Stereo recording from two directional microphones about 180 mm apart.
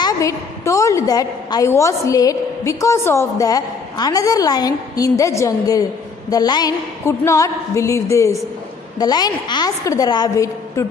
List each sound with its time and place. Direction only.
0.0 s a woman's voice: 15° left (ahead or behind)